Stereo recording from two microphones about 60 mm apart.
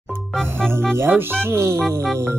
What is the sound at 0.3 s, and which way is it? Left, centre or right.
Music, centre.